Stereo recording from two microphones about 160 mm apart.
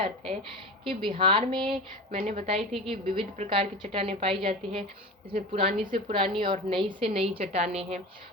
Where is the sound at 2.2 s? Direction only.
45° right (ahead or behind).